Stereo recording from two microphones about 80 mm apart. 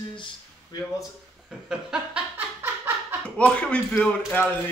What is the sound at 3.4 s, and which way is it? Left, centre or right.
Speech, centre.